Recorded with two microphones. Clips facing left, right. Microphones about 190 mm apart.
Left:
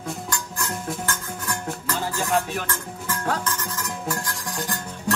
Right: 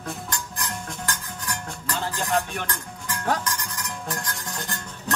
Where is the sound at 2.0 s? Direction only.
5° left (ahead or behind).